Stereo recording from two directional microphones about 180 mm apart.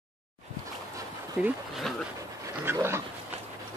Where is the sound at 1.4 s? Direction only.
10° right (ahead or behind).